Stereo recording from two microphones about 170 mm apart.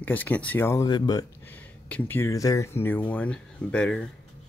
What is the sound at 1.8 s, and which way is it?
Speech, 10° left (ahead or behind).